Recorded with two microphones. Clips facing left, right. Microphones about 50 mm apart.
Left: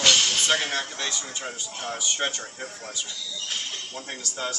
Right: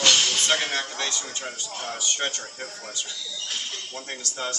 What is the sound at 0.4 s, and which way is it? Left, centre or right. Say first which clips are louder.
A man's voice: even; centre.